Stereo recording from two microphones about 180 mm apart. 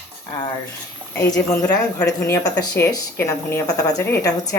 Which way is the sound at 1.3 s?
15° left (ahead or behind).